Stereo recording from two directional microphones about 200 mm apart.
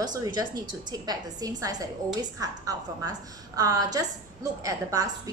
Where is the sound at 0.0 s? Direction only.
20° right (ahead or behind).